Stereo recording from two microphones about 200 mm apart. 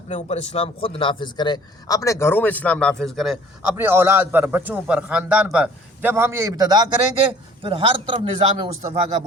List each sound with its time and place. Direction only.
0.1 s speech: 35° left (ahead or behind); by 3.3 s centre (ahead or behind)
3.8 s a man's voice: 10° right (ahead or behind)